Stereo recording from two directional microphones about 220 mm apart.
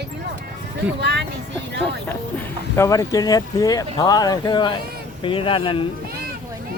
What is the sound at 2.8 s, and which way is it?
Speech, 15° left (ahead or behind).